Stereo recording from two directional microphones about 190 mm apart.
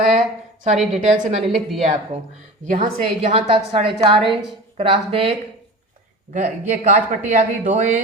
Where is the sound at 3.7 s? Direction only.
30° right (ahead or behind).